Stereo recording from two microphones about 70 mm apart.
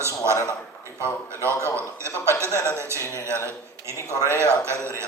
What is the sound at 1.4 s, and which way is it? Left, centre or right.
A man's voice, right.